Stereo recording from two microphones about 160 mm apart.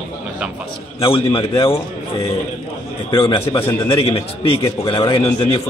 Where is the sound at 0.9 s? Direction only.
35° left (ahead or behind).